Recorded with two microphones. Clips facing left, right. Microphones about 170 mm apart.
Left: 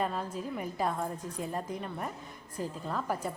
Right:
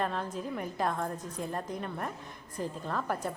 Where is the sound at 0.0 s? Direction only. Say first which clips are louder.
Even; 5° left (ahead or behind).